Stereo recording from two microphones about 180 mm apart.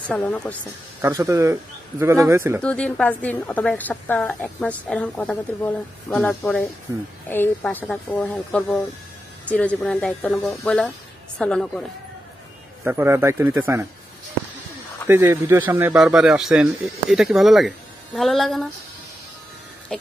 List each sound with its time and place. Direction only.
0.1 s a woman's voice: 10° left (ahead or behind)
1.0 s speech: 15° right (ahead or behind)
2.6 s a woman's voice: 5° left (ahead or behind)
12.8 s speech: 15° right (ahead or behind)
15.0 s a man's voice: 15° right (ahead or behind); by 18.7 s centre (ahead or behind)
19.9 s a sound: 5° left (ahead or behind)